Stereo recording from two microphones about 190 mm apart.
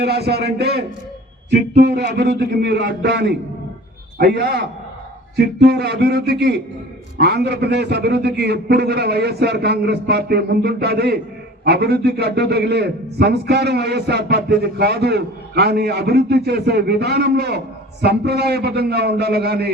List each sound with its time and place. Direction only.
0.0 s a man's voice: 60° right (ahead or behind)